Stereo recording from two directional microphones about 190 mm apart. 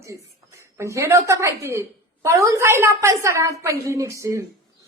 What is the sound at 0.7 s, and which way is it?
A woman's voice, 15° right (ahead or behind).